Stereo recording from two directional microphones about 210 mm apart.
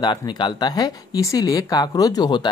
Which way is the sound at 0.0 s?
20° left (ahead or behind).